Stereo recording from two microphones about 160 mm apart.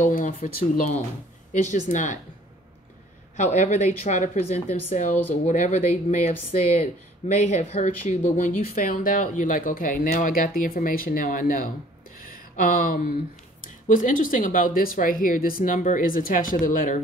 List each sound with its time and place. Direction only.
0.0 s a woman's voice: 55° left (ahead or behind)
3.3 s speech: 45° left (ahead or behind)
8.4 s speech: 55° left (ahead or behind)
12.3 s a sound: 60° left (ahead or behind)
13.8 s speech: 55° left (ahead or behind)